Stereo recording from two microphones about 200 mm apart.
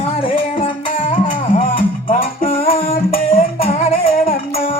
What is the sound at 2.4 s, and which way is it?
Music, 30° left (ahead or behind).